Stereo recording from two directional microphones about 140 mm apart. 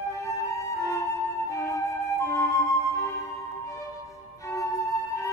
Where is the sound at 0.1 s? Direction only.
20° left (ahead or behind).